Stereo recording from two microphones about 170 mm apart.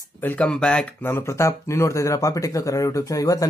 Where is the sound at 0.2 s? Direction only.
10° left (ahead or behind).